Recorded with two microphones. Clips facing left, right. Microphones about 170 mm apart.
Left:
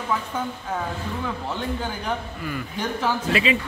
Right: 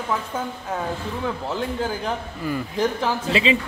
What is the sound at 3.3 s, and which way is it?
Speech, 25° right (ahead or behind).